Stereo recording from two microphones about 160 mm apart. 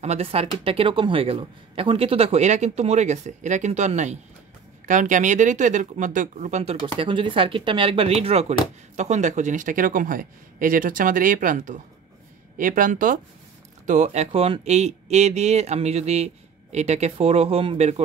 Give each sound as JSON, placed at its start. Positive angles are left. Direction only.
{"t": 0.0, "sound": "speech", "side_deg": -40}